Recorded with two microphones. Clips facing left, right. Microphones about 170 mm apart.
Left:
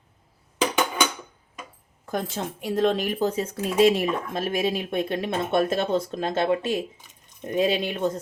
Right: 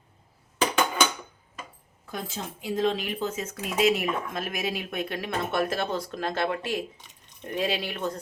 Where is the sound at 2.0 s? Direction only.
55° left (ahead or behind); by 8.2 s 20° left (ahead or behind).